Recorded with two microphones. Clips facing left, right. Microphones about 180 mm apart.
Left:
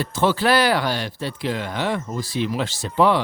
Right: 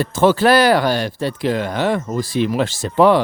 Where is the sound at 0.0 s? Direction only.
45° right (ahead or behind).